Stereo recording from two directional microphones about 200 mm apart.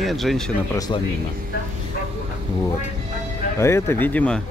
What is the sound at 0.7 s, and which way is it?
Speech, 20° left (ahead or behind).